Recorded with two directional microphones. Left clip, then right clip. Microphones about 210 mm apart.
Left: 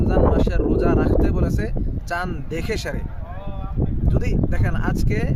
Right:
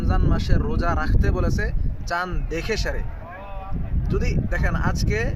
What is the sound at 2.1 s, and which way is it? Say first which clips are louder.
Speech: even; 10° left (ahead or behind).